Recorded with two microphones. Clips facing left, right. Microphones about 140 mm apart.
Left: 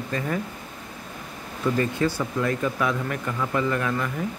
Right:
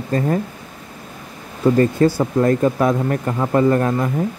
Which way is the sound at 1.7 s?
40° right (ahead or behind).